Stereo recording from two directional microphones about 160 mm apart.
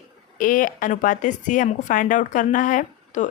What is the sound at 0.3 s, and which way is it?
Speech, 55° left (ahead or behind).